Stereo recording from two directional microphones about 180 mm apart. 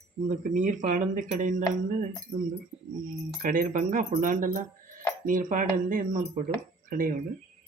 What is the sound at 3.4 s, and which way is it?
Speech, 45° right (ahead or behind).